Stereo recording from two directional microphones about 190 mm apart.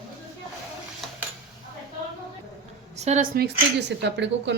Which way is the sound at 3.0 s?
35° right (ahead or behind).